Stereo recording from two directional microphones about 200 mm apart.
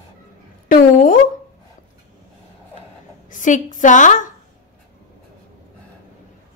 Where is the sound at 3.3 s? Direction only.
40° left (ahead or behind).